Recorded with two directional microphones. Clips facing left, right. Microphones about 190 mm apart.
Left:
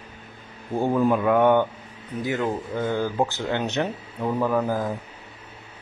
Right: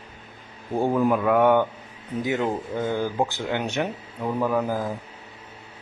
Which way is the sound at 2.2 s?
20° right (ahead or behind).